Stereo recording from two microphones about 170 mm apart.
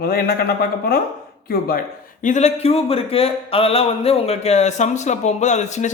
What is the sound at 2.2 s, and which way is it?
A man's voice, 45° left (ahead or behind).